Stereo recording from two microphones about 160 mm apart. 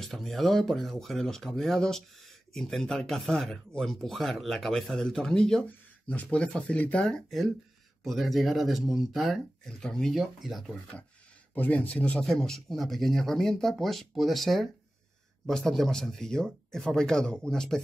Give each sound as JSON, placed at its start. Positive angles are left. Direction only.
{"t": 0.0, "sound": "speech", "side_deg": 0}
{"t": 11.5, "sound": "speech", "side_deg": 10}